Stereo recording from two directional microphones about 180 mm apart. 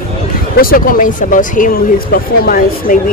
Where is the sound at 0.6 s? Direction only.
50° left (ahead or behind).